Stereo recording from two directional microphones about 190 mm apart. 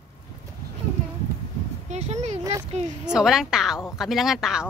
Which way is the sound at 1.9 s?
35° right (ahead or behind).